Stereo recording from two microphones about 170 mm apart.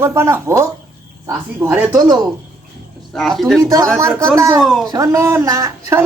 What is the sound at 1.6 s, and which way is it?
Speech, 15° right (ahead or behind).